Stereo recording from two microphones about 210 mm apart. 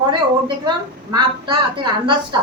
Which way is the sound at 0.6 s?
20° right (ahead or behind).